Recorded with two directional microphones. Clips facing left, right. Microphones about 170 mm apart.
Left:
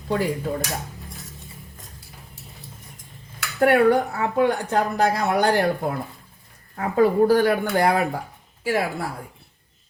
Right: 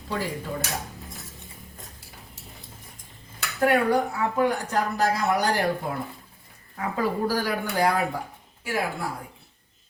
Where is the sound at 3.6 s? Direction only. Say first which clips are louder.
Left 5 dB; 65° left (ahead or behind).